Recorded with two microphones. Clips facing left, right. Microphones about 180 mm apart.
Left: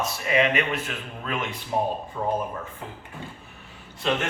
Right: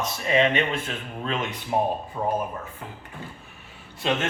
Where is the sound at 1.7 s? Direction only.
20° right (ahead or behind).